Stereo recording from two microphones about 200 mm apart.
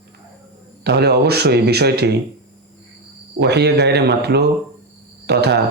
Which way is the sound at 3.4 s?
55° right (ahead or behind).